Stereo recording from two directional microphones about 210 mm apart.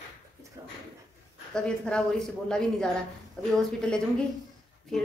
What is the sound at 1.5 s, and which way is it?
A woman's voice, 5° left (ahead or behind).